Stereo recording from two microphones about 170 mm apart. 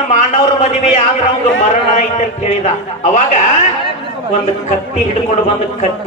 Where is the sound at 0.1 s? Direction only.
45° left (ahead or behind).